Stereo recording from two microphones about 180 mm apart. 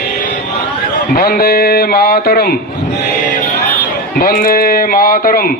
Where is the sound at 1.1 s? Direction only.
55° left (ahead or behind).